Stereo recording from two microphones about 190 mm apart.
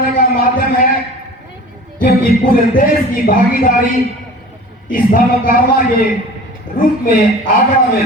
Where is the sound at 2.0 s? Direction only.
45° left (ahead or behind).